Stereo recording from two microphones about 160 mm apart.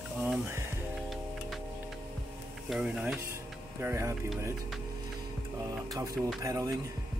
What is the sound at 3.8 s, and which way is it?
Speech, 15° right (ahead or behind).